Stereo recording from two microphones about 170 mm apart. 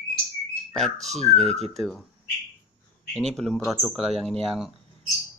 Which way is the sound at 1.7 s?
Centre (ahead or behind).